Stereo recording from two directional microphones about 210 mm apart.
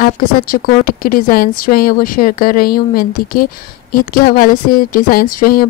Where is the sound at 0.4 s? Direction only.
45° left (ahead or behind).